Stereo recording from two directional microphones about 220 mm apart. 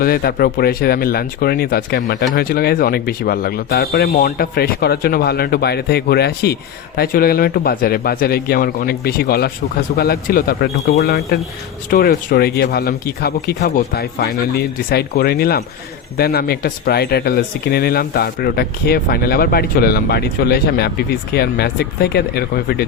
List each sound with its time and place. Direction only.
0.0 s speech: 45° left (ahead or behind)
11.9 s speech: 45° left (ahead or behind)